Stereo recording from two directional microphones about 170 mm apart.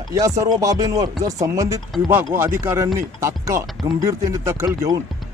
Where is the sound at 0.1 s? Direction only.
20° right (ahead or behind).